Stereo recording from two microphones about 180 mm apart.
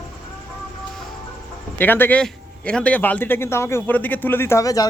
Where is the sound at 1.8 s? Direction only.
10° left (ahead or behind).